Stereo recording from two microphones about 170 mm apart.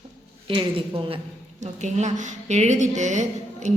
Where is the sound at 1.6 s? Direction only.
40° right (ahead or behind).